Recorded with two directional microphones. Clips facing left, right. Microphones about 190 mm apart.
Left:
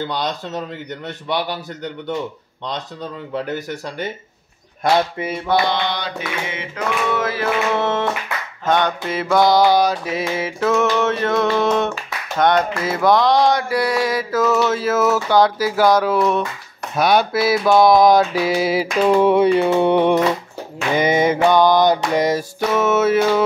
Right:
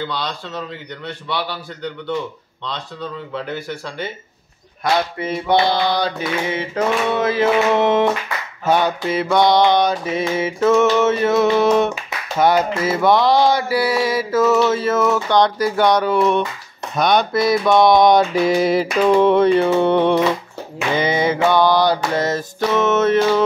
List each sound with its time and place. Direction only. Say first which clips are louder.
0.1 s a man's voice: left 3 dB; 45° left (ahead or behind)
3.3 s a man's voice: left 3 dB; 40° left (ahead or behind)
5.5 s a sound: right 3 dB; 30° right (ahead or behind)
7.2 s music: right 4 dB; 20° right (ahead or behind)
8.6 s mantra: right 1 dB; 5° right (ahead or behind)
16.9 s a sound: even; 5° left (ahead or behind)